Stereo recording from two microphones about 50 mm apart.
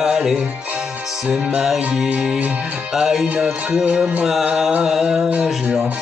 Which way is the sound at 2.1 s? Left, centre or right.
Centre.